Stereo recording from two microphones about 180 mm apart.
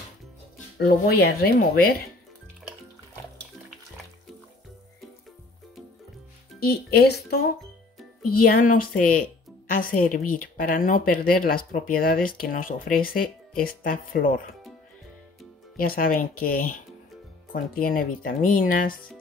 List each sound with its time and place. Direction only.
0.7 s speech: 65° left (ahead or behind)
6.6 s a woman's voice: 60° left (ahead or behind)
15.7 s a woman's voice: 50° left (ahead or behind)